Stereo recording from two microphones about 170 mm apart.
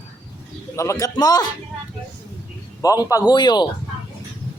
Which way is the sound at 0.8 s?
20° left (ahead or behind).